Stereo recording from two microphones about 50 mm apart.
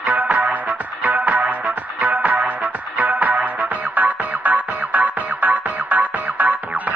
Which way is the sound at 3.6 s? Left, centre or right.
Right.